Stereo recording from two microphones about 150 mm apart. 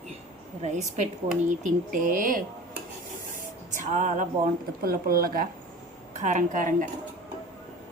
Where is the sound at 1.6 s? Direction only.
65° right (ahead or behind).